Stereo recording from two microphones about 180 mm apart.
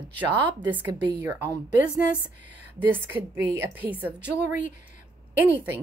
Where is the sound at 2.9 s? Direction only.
10° right (ahead or behind).